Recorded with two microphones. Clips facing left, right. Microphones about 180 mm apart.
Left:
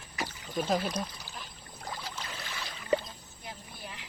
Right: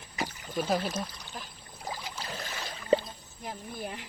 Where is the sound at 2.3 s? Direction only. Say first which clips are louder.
Right 3 dB; 40° right (ahead or behind).